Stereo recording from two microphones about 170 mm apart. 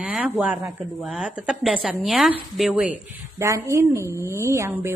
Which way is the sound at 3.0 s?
15° right (ahead or behind).